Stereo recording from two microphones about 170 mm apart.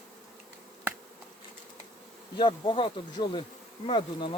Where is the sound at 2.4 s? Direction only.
30° left (ahead or behind).